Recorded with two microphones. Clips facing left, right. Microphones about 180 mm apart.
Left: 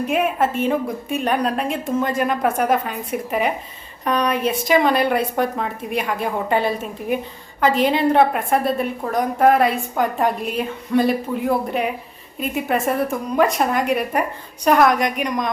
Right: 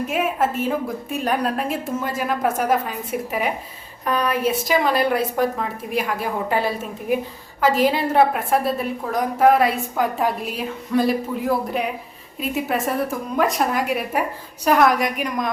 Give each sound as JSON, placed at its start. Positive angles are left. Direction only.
{"t": 0.1, "sound": "a woman's voice", "side_deg": 0}